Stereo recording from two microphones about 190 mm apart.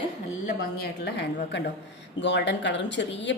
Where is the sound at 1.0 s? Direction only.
65° left (ahead or behind).